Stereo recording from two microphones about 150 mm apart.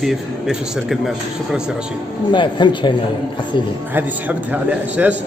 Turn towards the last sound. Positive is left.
turn(degrees=-10)  # may be behind; listen again after turning